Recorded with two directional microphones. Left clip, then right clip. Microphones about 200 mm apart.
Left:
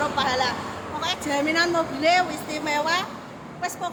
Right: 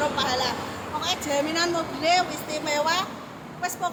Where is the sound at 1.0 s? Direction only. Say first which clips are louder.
Left 2 dB; 20° left (ahead or behind).